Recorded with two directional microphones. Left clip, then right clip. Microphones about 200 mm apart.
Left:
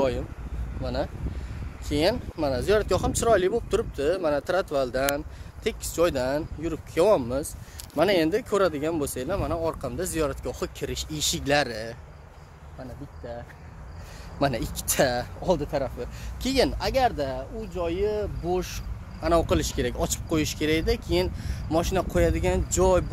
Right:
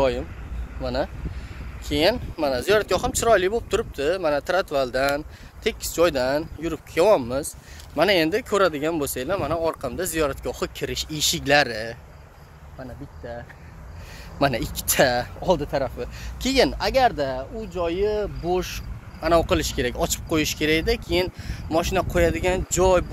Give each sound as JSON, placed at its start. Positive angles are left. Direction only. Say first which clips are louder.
{"t": 0.8, "sound": "speech", "louder": "right 4 dB", "side_deg": -30}
{"t": 1.9, "sound": "speech", "louder": "right 4 dB", "side_deg": 5}
{"t": 5.6, "sound": "speech", "louder": "right 4 dB", "side_deg": -5}
{"t": 6.9, "sound": "speech", "louder": "right 3 dB", "side_deg": 15}
{"t": 14.4, "sound": "speech", "louder": "right 4 dB", "side_deg": -10}
{"t": 16.3, "sound": "speech", "louder": "right 4 dB", "side_deg": -20}